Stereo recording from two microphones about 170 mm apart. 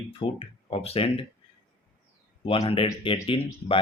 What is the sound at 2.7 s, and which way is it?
Speech, 30° left (ahead or behind).